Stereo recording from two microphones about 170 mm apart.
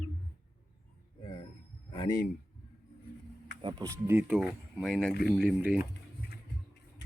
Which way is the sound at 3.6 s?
25° right (ahead or behind).